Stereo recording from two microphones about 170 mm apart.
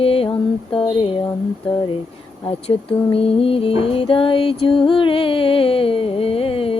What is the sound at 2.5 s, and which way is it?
Music, 35° left (ahead or behind).